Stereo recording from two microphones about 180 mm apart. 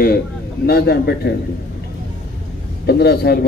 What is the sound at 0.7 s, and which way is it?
Speech, 65° left (ahead or behind).